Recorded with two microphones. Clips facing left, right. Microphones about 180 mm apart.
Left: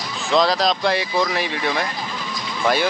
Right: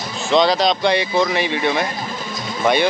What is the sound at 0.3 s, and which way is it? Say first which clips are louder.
Speech: right 3 dB; centre (ahead or behind).